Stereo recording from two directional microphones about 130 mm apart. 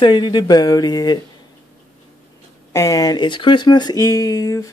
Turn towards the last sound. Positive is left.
turn(degrees=25)  # may be behind; listen again after turning